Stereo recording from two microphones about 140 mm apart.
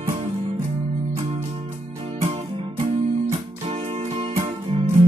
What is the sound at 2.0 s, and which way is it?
Music, 55° right (ahead or behind).